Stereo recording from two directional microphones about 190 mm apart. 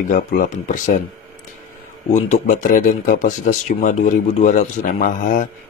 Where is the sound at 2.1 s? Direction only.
40° left (ahead or behind).